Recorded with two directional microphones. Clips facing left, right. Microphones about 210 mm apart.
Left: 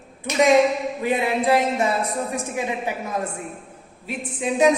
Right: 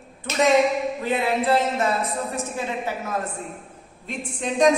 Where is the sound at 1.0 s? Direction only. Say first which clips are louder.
Left 3 dB; 15° left (ahead or behind).